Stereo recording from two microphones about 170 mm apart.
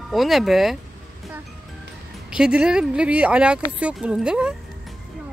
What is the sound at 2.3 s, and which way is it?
Speech, 5° right (ahead or behind).